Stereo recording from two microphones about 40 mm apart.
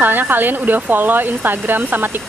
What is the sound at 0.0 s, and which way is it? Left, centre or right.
Speech, right.